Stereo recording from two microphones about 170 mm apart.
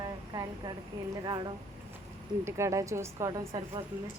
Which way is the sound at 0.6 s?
25° right (ahead or behind).